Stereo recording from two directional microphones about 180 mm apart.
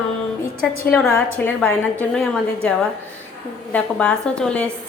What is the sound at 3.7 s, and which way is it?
Speech, 5° left (ahead or behind).